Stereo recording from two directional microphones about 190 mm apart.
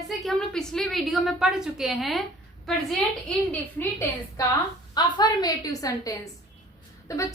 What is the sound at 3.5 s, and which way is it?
Speech, 10° left (ahead or behind).